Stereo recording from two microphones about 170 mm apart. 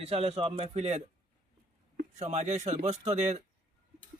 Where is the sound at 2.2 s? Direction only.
40° right (ahead or behind).